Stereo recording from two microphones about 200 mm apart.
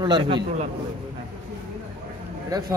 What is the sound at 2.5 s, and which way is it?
Speech, 20° right (ahead or behind).